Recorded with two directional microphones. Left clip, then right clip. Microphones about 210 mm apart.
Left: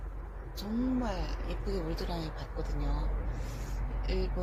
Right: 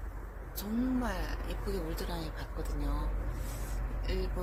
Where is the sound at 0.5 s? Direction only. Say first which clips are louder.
Left 1 dB; centre (ahead or behind).